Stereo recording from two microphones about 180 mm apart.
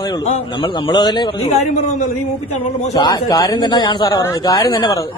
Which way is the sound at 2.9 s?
20° left (ahead or behind).